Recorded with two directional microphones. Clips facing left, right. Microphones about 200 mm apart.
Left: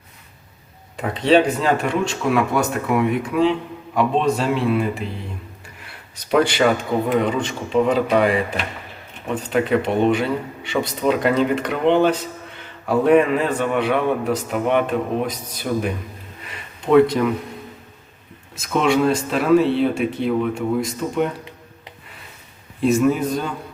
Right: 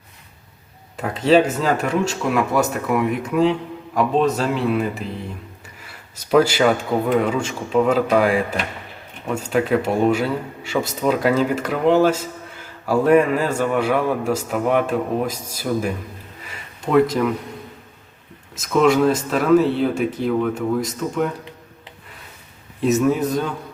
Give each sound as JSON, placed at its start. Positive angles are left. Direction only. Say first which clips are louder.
{"t": 1.6, "sound": "a man's voice", "louder": "even", "side_deg": 0}
{"t": 6.3, "sound": "a man's voice", "louder": "right 1 dB", "side_deg": -5}
{"t": 18.7, "sound": "a man's voice", "louder": "right 2 dB", "side_deg": 0}
{"t": 22.9, "sound": "a man's voice", "louder": "even", "side_deg": 0}